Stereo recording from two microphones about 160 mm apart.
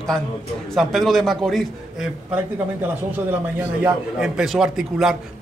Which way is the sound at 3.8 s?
5° right (ahead or behind).